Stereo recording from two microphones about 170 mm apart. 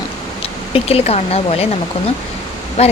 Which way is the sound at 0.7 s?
35° left (ahead or behind).